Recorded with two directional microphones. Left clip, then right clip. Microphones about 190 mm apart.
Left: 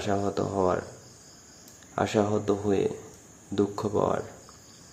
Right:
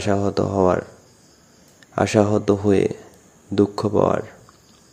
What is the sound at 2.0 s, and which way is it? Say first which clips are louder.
Speech: right 8 dB; 30° right (ahead or behind).